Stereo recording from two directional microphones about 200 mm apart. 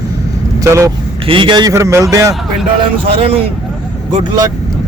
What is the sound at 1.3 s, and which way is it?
Speech, 25° right (ahead or behind).